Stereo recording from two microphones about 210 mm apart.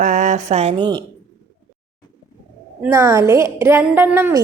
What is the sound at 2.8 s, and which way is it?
A woman's voice, 15° right (ahead or behind).